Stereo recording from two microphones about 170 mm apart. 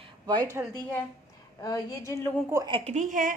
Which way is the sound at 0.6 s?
10° right (ahead or behind).